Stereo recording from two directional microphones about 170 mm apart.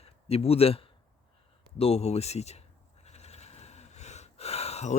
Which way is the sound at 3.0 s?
40° left (ahead or behind).